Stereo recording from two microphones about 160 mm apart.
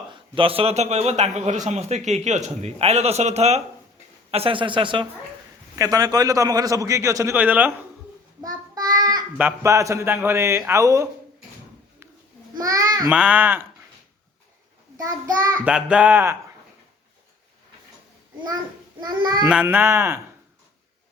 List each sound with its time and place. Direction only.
0.1 s a man's voice: 35° right (ahead or behind); by 7.7 s 10° right (ahead or behind)
8.4 s child singing: 25° right (ahead or behind)
9.4 s a man's voice: 15° right (ahead or behind)
12.5 s babbling: 20° right (ahead or behind)
13.1 s speech: 5° right (ahead or behind)
15.6 s speech: 10° right (ahead or behind)
18.9 s a man's voice: 25° right (ahead or behind)